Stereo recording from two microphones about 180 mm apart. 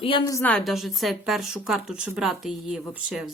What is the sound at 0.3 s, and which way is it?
Speech, 15° left (ahead or behind).